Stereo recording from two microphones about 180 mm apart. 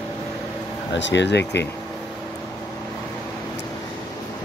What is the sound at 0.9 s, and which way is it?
Speech, 80° left.